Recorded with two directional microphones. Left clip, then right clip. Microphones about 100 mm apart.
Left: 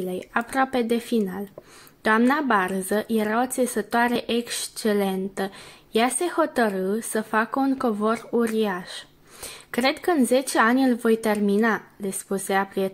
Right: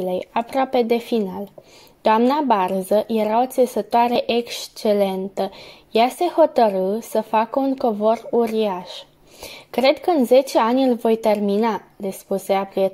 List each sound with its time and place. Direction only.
0.2 s a woman's voice: 25° right (ahead or behind)